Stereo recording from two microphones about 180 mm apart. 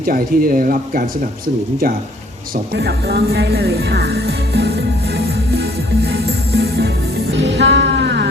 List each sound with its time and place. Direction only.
0.0 s speech: 55° right (ahead or behind)
2.7 s music: 65° right (ahead or behind)